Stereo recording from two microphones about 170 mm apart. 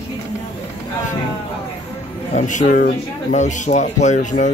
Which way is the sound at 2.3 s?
45° left (ahead or behind).